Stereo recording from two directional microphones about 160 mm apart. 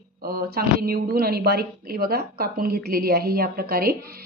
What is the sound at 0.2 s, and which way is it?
A woman's voice, 70° right (ahead or behind).